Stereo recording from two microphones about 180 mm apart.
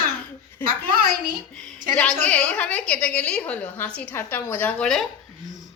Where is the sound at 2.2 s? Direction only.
5° left (ahead or behind).